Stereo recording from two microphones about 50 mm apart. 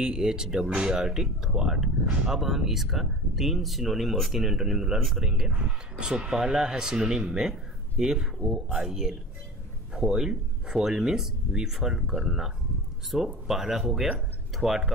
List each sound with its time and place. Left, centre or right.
0.0 s speech: centre
4.9 s speech: centre
5.2 s speech: centre
8.4 s speech: right; by 14.8 s centre